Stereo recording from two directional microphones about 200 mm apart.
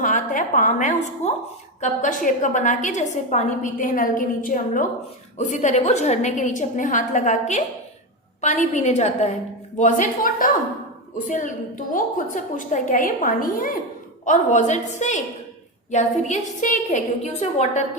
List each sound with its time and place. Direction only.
0.0 s a woman's voice: 40° left (ahead or behind)